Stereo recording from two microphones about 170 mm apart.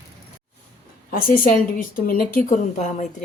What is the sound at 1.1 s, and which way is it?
A woman's voice, 55° left (ahead or behind).